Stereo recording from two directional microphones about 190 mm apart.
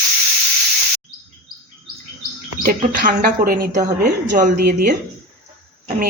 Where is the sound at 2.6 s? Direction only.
45° right (ahead or behind).